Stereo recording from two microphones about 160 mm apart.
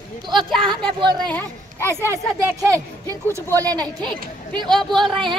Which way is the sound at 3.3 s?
20° right (ahead or behind).